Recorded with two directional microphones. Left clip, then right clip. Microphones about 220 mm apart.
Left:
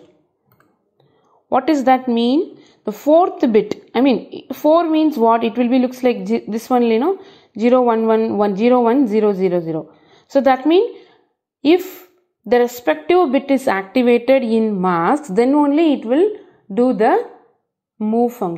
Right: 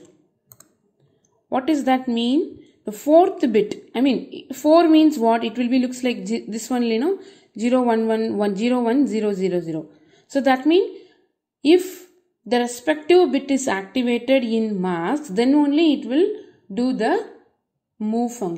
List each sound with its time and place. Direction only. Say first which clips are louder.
1.5 s a woman's voice: left 6 dB; 15° left (ahead or behind)